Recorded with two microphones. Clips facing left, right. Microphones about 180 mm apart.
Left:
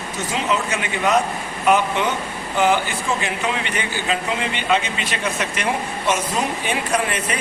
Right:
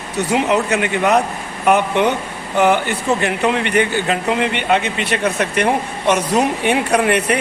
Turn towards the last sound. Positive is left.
turn(degrees=-65)  # may be behind; listen again after turning